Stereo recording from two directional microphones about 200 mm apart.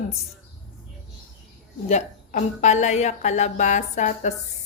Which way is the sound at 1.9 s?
35° left (ahead or behind).